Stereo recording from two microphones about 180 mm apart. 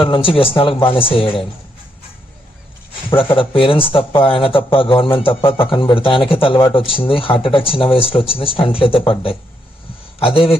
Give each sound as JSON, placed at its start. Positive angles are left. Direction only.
{"t": 0.0, "sound": "speech", "side_deg": 30}
{"t": 3.1, "sound": "speech", "side_deg": 30}